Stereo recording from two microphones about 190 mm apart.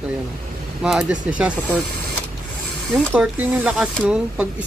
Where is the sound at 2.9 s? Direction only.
5° right (ahead or behind).